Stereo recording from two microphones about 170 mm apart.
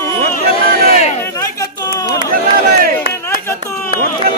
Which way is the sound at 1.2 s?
20° left (ahead or behind).